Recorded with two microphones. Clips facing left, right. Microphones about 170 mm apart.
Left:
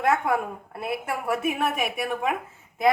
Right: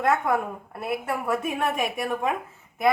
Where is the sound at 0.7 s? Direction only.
20° left (ahead or behind).